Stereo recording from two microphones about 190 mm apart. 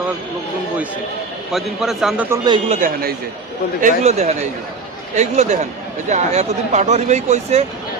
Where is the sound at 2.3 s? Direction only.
20° right (ahead or behind).